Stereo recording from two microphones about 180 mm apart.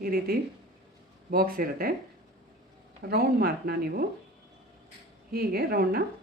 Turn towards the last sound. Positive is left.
turn(degrees=-60)  # may be behind; listen again after turning